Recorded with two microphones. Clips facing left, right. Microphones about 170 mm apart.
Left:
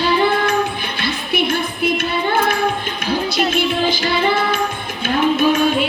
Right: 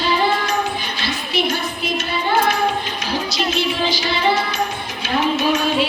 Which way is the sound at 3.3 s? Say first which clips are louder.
Left 2 dB; 55° left (ahead or behind).